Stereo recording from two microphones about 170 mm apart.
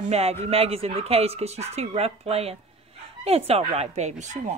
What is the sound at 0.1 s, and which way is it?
Speech, 40° right (ahead or behind).